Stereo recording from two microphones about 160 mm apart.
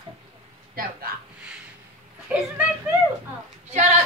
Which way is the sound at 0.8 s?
65° right (ahead or behind).